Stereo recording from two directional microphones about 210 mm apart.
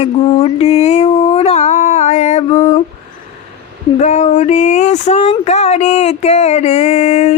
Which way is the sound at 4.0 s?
35° left (ahead or behind).